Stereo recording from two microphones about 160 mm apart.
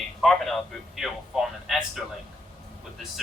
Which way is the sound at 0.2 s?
Centre (ahead or behind).